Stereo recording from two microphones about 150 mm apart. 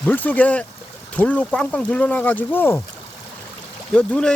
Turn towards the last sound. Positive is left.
turn(degrees=5)  # may be behind; listen again after turning